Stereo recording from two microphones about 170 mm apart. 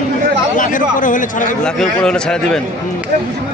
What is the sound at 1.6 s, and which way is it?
Speech, 5° left (ahead or behind).